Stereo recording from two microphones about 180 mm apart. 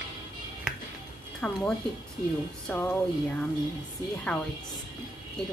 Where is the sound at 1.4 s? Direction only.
5° left (ahead or behind).